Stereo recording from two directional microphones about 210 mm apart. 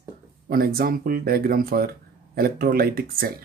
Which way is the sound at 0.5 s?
45° right (ahead or behind).